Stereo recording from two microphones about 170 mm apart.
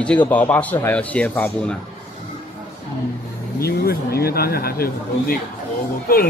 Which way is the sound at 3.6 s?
65° left (ahead or behind).